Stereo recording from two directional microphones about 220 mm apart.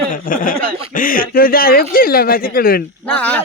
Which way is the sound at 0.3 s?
35° left (ahead or behind).